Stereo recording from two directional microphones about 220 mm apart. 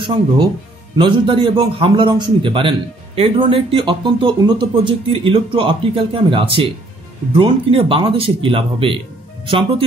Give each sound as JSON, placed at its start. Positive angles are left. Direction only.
{"t": 0.9, "sound": "speech", "side_deg": -20}